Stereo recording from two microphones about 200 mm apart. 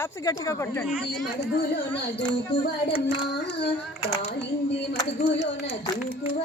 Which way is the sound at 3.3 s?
55° left (ahead or behind).